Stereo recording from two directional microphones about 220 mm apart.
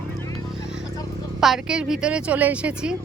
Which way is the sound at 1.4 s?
Centre (ahead or behind).